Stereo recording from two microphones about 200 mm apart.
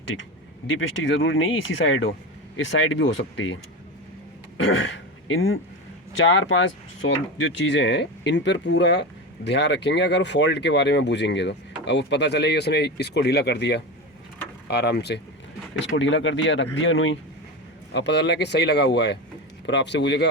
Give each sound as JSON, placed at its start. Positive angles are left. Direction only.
{"t": 1.0, "sound": "speech", "side_deg": 75}
{"t": 5.3, "sound": "speech", "side_deg": 85}
{"t": 6.1, "sound": "speech", "side_deg": 70}
{"t": 15.8, "sound": "speech", "side_deg": 70}
{"t": 17.9, "sound": "speech", "side_deg": 60}